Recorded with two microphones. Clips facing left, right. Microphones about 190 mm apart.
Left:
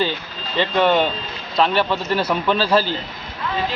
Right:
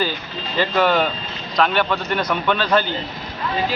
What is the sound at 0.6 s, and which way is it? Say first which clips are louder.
A man's voice: left 1 dB; 25° left (ahead or behind).